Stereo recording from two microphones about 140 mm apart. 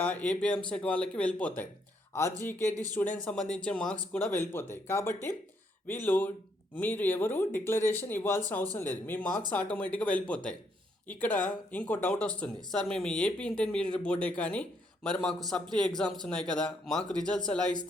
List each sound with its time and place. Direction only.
0.0 s speech: 10° left (ahead or behind)
2.9 s speech: 10° left (ahead or behind)